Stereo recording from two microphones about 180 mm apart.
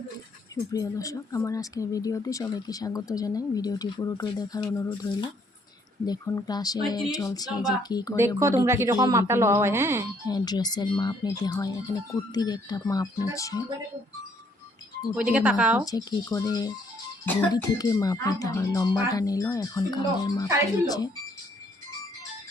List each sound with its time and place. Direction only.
0.7 s speech: 20° left (ahead or behind)
6.1 s speech: 20° left (ahead or behind)
8.4 s speech: 15° right (ahead or behind)
10.2 s speech: 20° left (ahead or behind)
15.1 s speech: 5° right (ahead or behind)
15.9 s speech: 20° left (ahead or behind)